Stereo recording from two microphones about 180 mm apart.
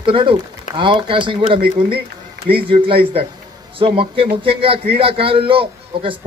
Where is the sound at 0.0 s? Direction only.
30° right (ahead or behind).